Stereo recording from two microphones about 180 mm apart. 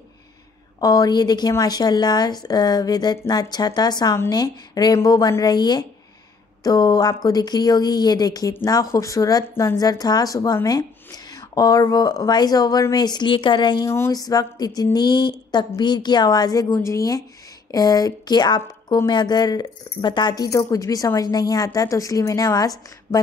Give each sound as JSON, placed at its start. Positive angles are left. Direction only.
{"t": 0.7, "sound": "speech", "side_deg": 20}